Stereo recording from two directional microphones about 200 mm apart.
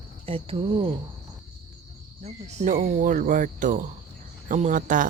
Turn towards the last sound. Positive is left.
turn(degrees=-40)  # may be behind; listen again after turning